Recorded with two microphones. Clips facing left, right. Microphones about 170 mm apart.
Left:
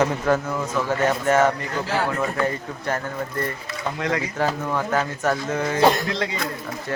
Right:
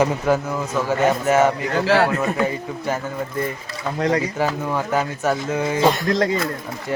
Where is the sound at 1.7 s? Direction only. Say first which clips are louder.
Right 7 dB; 85° right.